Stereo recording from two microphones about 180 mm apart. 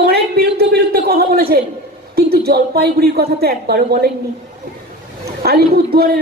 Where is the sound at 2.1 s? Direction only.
60° right (ahead or behind).